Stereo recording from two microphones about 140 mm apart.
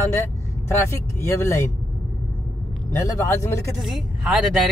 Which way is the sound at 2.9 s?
20° left (ahead or behind).